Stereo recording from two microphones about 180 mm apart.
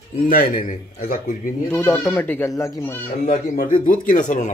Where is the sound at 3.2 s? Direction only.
55° left (ahead or behind).